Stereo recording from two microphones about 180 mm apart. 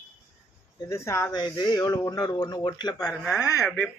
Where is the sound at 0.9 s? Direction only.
15° left (ahead or behind).